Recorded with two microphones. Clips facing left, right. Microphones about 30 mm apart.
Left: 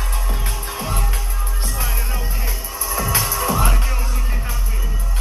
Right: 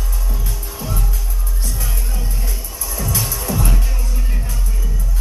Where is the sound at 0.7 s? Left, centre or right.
Left.